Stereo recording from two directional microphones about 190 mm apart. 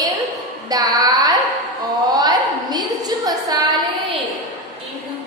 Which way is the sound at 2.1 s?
20° right (ahead or behind).